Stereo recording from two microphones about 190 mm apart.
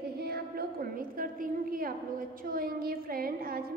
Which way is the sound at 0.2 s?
55° right (ahead or behind).